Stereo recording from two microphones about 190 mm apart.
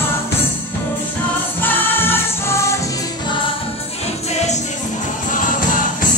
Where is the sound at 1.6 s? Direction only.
10° left (ahead or behind).